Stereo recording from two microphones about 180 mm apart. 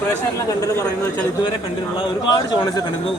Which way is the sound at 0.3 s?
15° left (ahead or behind).